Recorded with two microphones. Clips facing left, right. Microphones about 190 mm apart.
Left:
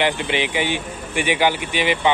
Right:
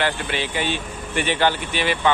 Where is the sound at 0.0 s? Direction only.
15° left (ahead or behind).